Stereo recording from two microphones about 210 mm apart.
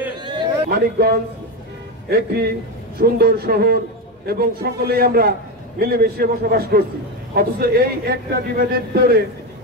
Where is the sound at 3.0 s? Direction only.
45° right (ahead or behind).